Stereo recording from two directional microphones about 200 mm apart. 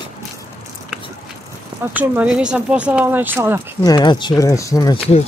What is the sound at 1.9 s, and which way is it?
Speech, 5° right (ahead or behind).